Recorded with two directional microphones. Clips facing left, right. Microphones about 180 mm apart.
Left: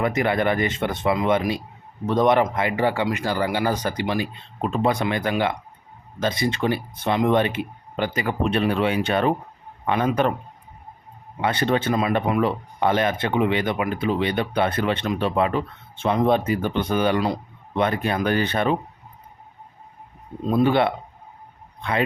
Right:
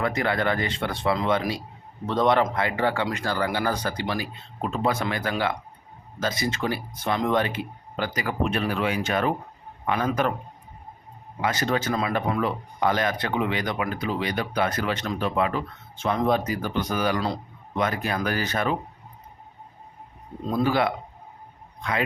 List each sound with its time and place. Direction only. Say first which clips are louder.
0.0 s speech: left 3 dB; 20° left (ahead or behind)
11.3 s speech: left 3 dB; 25° left (ahead or behind)
20.5 s speech: left 4 dB; 25° left (ahead or behind)